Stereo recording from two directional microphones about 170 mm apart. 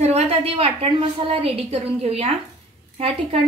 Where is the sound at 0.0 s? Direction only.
40° right (ahead or behind).